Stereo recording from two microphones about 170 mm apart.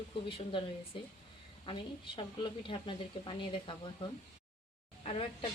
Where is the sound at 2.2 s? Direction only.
30° left (ahead or behind).